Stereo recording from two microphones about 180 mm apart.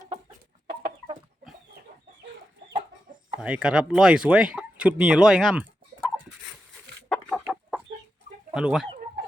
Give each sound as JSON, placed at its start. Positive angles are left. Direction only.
{"t": 0.8, "sound": "chicken", "side_deg": -55}
{"t": 3.4, "sound": "speech", "side_deg": -5}
{"t": 7.1, "sound": "chicken", "side_deg": 0}
{"t": 8.5, "sound": "speech", "side_deg": -5}